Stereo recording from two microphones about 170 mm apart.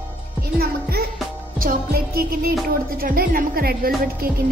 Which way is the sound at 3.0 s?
60° right (ahead or behind).